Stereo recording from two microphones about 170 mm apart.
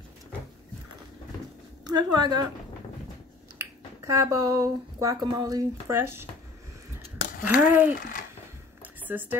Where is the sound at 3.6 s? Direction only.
15° right (ahead or behind).